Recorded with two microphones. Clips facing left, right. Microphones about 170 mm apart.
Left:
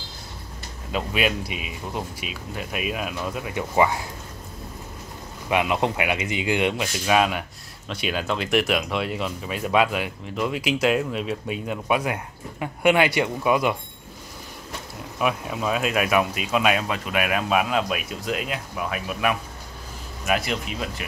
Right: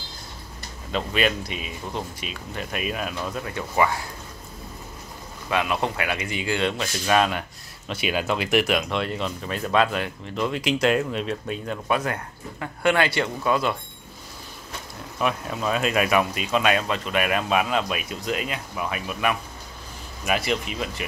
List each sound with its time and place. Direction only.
0.9 s speech: 10° left (ahead or behind)
3.7 s speech: 20° left (ahead or behind)
5.5 s speech: 20° left (ahead or behind)
7.9 s speech: 5° right (ahead or behind); by 13.7 s 15° left (ahead or behind)
15.1 s speech: 5° left (ahead or behind)